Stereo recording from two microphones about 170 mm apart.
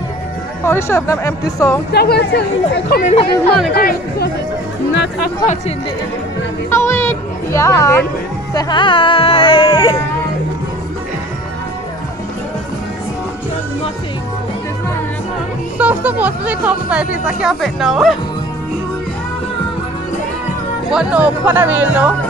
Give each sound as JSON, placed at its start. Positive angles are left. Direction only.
{"t": 0.7, "sound": "speech", "side_deg": 15}
{"t": 1.9, "sound": "speech", "side_deg": 70}
{"t": 3.0, "sound": "speech", "side_deg": 45}
{"t": 3.7, "sound": "speech", "side_deg": 65}
{"t": 6.7, "sound": "speech", "side_deg": 15}
{"t": 15.8, "sound": "speech", "side_deg": -10}
{"t": 20.9, "sound": "speech", "side_deg": -5}